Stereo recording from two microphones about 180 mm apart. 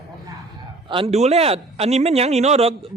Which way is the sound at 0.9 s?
30° right (ahead or behind).